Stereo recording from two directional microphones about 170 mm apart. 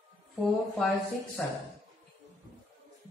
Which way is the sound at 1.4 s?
5° left (ahead or behind).